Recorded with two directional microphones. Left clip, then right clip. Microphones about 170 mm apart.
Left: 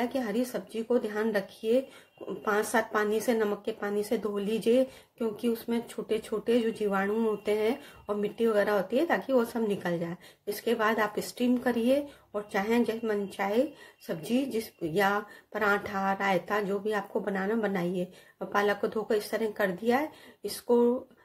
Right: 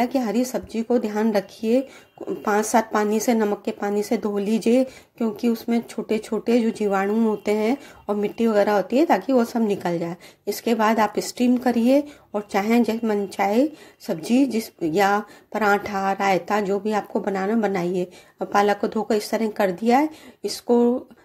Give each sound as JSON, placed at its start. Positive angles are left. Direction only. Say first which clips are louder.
{"t": 0.0, "sound": "speech", "louder": "right 8 dB", "side_deg": -40}